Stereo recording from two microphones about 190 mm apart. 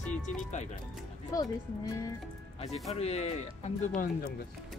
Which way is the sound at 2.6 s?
35° left (ahead or behind).